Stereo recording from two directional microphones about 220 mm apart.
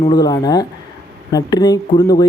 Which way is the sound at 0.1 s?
15° left (ahead or behind).